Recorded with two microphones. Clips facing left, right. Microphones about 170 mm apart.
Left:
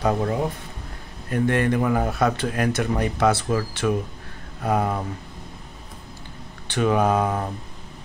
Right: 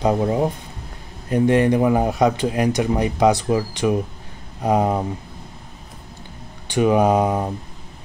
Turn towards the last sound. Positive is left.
turn(degrees=-15)  # may be behind; listen again after turning